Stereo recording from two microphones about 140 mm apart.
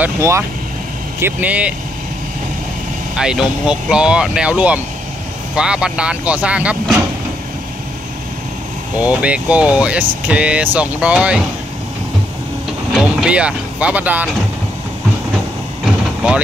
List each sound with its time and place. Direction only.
0.0 s speech: 20° right (ahead or behind)
3.2 s speech: 5° right (ahead or behind)
8.9 s speech: 10° right (ahead or behind)
12.9 s speech: 5° right (ahead or behind)